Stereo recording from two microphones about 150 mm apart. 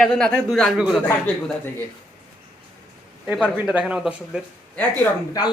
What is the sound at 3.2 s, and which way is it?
Speech, 10° right (ahead or behind).